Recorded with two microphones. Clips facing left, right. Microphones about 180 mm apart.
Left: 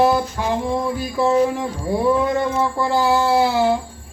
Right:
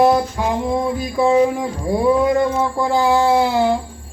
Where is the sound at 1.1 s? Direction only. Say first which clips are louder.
Right 3 dB; 5° right (ahead or behind).